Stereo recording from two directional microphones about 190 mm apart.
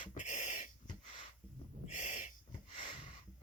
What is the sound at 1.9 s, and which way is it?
Owl, 40° left (ahead or behind).